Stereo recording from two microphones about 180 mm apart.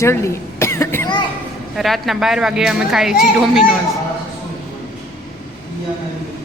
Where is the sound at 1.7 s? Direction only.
Centre (ahead or behind).